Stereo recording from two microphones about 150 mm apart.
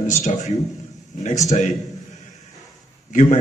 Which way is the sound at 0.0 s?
55° left (ahead or behind).